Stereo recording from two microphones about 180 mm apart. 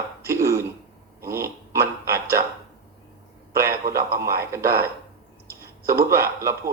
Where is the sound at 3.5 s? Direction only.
15° right (ahead or behind).